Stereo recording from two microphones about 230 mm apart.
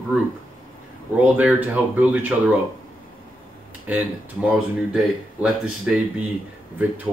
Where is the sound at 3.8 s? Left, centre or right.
Centre.